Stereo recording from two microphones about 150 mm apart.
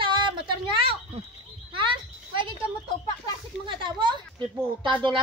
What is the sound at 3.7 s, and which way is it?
Speech, 35° right (ahead or behind).